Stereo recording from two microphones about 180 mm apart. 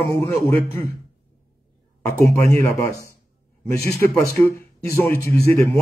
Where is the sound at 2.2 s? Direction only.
15° left (ahead or behind).